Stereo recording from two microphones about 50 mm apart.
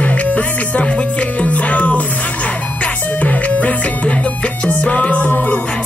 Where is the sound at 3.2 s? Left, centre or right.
Left.